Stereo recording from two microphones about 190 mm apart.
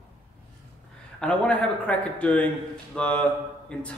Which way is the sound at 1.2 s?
5° left (ahead or behind).